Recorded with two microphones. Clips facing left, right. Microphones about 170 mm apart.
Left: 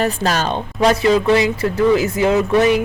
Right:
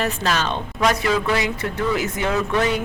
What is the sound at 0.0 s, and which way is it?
Speech, 40° left (ahead or behind).